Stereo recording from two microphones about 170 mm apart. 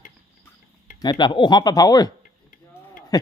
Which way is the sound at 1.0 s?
25° left (ahead or behind).